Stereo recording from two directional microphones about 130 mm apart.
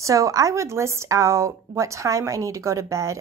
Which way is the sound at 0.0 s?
25° right (ahead or behind).